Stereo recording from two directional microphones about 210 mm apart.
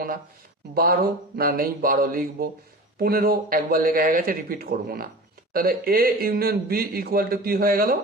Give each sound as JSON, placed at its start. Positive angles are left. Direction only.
{"t": 0.7, "sound": "speech", "side_deg": -45}